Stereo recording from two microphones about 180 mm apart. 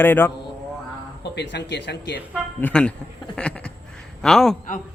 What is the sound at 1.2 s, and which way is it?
Speech, 70° left (ahead or behind).